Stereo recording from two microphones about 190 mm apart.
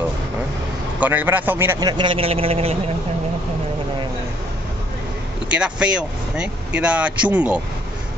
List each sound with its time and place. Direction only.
0.9 s a man's voice: 10° right (ahead or behind); by 2.8 s 30° right (ahead or behind)
5.5 s speech: 5° right (ahead or behind)